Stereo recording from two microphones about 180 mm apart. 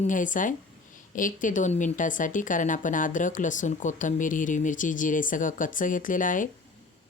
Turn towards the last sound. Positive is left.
turn(degrees=45)  # may be behind; listen again after turning